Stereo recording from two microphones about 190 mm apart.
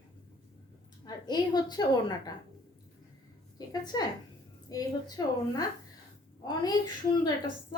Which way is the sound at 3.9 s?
20° left (ahead or behind).